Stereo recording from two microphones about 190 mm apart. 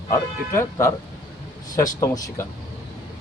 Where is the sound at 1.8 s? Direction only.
15° left (ahead or behind).